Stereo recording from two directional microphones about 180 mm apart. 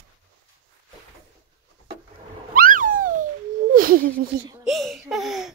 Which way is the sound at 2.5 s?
50° right (ahead or behind).